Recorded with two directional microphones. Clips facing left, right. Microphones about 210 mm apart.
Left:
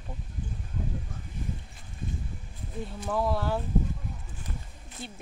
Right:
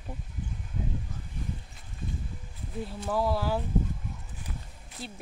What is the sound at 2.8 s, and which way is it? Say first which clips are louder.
Speech: even; 5° right (ahead or behind).